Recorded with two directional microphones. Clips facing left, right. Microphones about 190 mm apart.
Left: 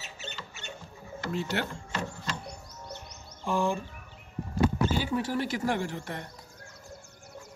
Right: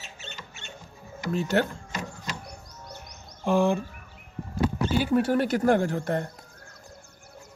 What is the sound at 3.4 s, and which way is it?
Speech, 65° right (ahead or behind).